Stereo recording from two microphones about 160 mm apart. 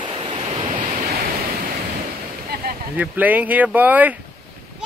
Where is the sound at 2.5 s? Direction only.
80° right.